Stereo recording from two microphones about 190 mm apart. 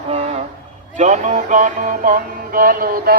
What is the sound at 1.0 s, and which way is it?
Music, 40° right (ahead or behind).